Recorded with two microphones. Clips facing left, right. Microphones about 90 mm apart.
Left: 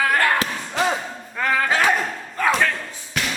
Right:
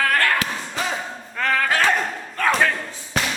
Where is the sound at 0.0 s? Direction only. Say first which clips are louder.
Left 1 dB; 15° left (ahead or behind).